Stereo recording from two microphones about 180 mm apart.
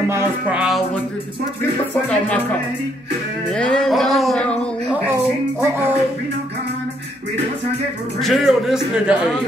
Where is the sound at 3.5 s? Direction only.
5° left (ahead or behind).